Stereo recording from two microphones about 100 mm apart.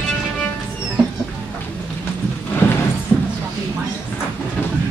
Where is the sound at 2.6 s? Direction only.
20° left (ahead or behind).